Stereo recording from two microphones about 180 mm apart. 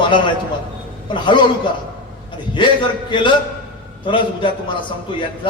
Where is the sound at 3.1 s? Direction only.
25° left (ahead or behind).